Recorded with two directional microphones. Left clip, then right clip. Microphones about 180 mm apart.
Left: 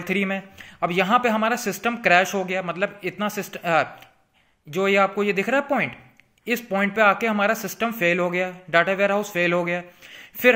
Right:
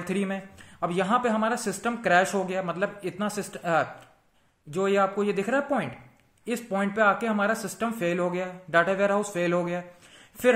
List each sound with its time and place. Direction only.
0.1 s a man's voice: 20° left (ahead or behind)